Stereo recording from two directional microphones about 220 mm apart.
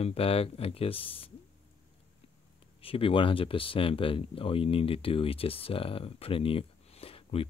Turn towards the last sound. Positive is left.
turn(degrees=25)  # may be behind; listen again after turning